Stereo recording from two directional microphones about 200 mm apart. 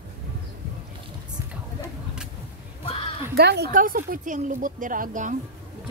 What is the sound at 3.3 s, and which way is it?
A woman's voice, 55° right (ahead or behind).